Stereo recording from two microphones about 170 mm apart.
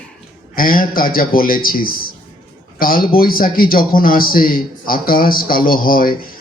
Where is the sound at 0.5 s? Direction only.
55° left (ahead or behind).